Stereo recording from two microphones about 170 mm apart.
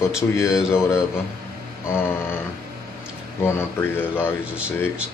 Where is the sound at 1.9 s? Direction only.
15° left (ahead or behind).